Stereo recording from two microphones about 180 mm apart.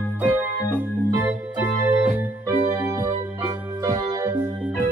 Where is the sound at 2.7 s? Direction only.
15° right (ahead or behind).